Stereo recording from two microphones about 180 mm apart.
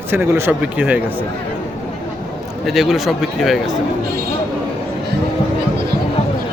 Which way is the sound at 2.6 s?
Centre (ahead or behind).